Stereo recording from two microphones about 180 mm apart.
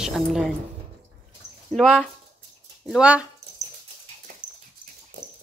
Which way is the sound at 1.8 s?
Centre (ahead or behind).